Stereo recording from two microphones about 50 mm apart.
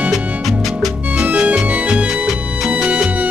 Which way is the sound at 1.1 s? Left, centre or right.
Right.